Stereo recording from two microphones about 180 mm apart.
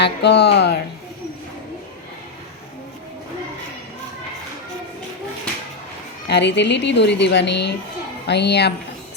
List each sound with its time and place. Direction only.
0.0 s speech: 70° left (ahead or behind)
6.2 s speech: 75° left (ahead or behind)